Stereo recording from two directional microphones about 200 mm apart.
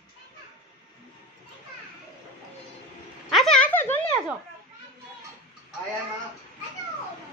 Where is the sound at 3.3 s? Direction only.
Centre (ahead or behind).